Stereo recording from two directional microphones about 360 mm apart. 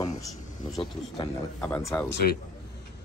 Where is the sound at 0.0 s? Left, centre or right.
Centre.